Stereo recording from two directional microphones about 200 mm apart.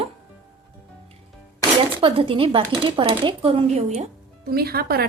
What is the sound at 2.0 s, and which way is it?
Speech, 25° right (ahead or behind).